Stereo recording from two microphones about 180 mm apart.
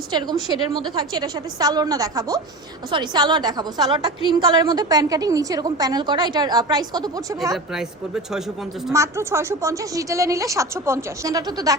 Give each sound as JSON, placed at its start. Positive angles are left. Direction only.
{"t": 0.1, "sound": "a woman's voice", "side_deg": -25}
{"t": 7.5, "sound": "speech", "side_deg": -5}
{"t": 8.9, "sound": "a woman's voice", "side_deg": -15}